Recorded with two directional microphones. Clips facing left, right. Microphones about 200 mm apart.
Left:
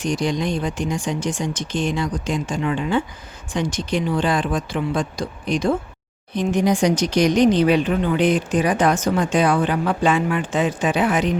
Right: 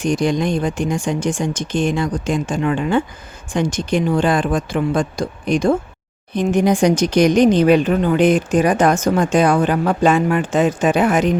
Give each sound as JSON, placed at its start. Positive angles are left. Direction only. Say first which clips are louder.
{"t": 0.0, "sound": "speech", "louder": "right 4 dB", "side_deg": -50}